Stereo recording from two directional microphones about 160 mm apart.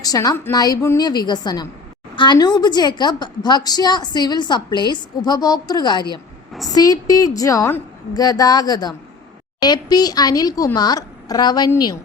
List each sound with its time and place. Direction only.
0.0 s a woman's voice: 25° left (ahead or behind)